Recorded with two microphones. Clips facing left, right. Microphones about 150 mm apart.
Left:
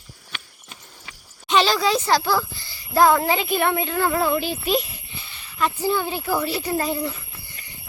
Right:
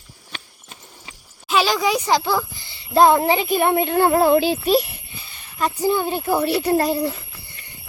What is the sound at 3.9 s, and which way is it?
Speech, 35° right (ahead or behind).